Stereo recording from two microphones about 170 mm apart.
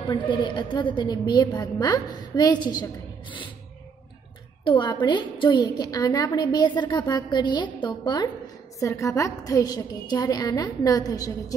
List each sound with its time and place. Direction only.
0.1 s a woman's voice: 25° left (ahead or behind)
4.6 s a woman's voice: 30° left (ahead or behind)